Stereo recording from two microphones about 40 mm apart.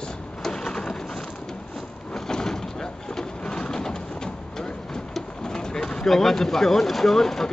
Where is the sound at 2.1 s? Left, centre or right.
Centre.